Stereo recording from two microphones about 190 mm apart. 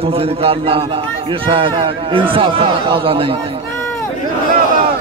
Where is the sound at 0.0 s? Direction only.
30° right (ahead or behind).